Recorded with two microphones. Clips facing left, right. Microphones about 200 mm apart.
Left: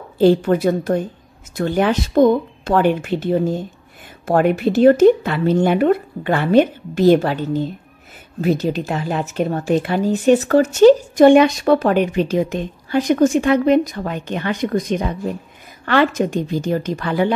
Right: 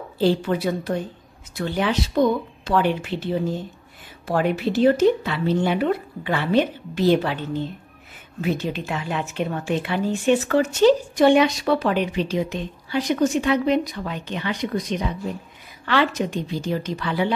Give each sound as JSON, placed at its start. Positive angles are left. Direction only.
{"t": 0.2, "sound": "a woman's voice", "side_deg": 50}